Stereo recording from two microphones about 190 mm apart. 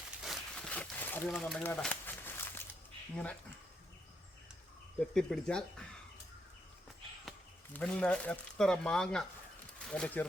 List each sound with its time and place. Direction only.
0.2 s a sound: centre (ahead or behind)
4.9 s speech: 5° left (ahead or behind)
7.7 s speech: 5° left (ahead or behind)